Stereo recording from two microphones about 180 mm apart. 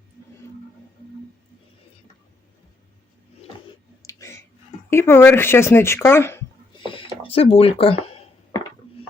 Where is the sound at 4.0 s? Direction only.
15° left (ahead or behind).